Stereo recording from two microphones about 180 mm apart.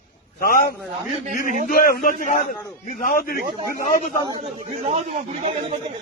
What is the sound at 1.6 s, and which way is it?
A man's voice, 55° left (ahead or behind).